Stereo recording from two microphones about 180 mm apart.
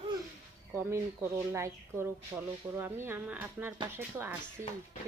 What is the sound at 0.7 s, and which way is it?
Speech, 15° right (ahead or behind).